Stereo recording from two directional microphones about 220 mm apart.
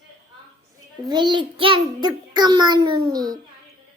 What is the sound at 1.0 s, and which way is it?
A child's voice, 20° right (ahead or behind).